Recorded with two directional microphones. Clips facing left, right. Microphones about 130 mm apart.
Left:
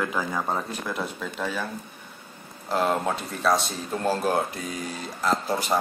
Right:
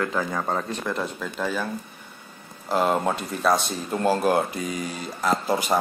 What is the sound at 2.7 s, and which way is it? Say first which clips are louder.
Speech: right 2 dB; 5° right (ahead or behind).